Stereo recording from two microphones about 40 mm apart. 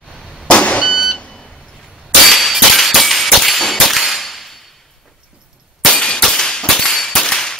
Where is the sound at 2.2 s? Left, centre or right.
Centre.